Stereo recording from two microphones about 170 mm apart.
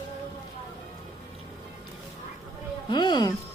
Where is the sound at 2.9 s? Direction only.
25° left (ahead or behind).